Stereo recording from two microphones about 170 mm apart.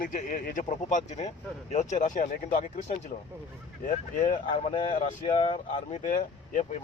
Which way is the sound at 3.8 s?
50° left (ahead or behind).